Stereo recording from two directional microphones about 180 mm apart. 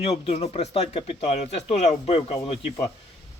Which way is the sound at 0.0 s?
35° left (ahead or behind).